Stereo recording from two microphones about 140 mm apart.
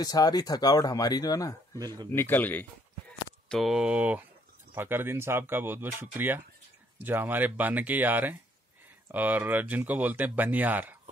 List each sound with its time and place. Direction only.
0.0 s speech: 30° left (ahead or behind)
3.4 s speech: centre (ahead or behind)